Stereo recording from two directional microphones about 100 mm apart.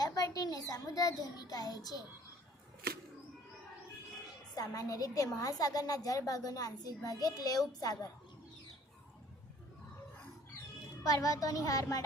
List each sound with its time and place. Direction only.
0.0 s a child's voice: 35° left (ahead or behind)
4.5 s a woman's voice: 40° left (ahead or behind)
11.0 s a woman's voice: 35° left (ahead or behind)